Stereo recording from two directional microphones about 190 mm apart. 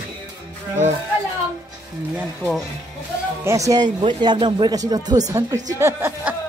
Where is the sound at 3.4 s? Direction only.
15° right (ahead or behind).